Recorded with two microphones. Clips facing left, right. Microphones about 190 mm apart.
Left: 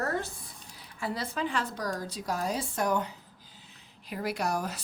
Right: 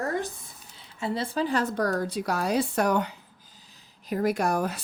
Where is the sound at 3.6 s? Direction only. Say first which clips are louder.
Right 10 dB; 40° right (ahead or behind); by 4.8 s 55° right (ahead or behind).